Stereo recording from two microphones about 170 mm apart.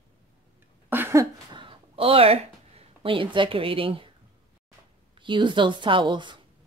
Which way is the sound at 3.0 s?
30° right (ahead or behind).